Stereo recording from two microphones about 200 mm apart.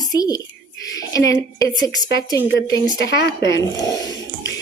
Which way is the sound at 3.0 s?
55° left (ahead or behind).